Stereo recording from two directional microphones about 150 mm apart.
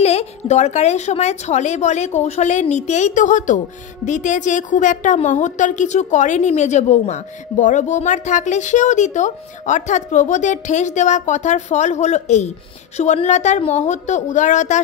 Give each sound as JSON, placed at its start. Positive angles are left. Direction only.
{"t": 0.0, "sound": "a woman's voice", "side_deg": 45}